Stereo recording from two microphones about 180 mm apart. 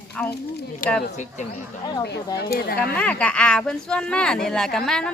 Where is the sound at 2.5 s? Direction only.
60° left (ahead or behind).